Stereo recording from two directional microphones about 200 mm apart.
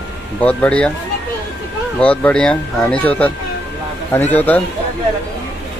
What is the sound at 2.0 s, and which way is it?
Speech, 5° left (ahead or behind).